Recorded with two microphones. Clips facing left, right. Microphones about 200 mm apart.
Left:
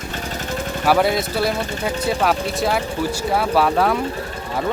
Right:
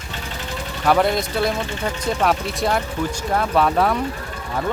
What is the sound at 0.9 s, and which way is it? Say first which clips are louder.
Speech: even; 5° left (ahead or behind).